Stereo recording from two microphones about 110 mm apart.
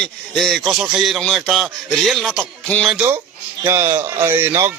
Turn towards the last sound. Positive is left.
turn(degrees=-20)  # may be behind; listen again after turning